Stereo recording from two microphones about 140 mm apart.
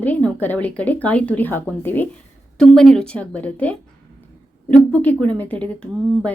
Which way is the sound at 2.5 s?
5° left (ahead or behind).